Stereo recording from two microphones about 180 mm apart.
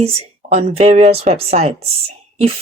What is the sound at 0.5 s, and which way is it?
Speech, 35° right (ahead or behind).